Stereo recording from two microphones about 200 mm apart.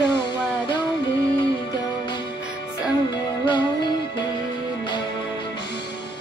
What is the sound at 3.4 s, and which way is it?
Music, 20° left (ahead or behind).